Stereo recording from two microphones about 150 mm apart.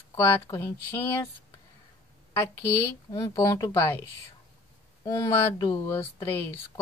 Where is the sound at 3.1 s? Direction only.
20° left (ahead or behind).